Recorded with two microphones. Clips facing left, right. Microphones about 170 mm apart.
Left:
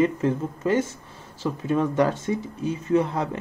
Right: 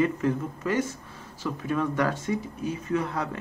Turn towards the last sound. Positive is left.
turn(degrees=25)  # may be behind; listen again after turning